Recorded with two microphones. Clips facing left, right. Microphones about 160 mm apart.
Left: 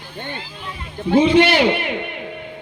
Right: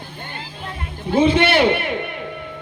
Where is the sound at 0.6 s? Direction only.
50° right (ahead or behind).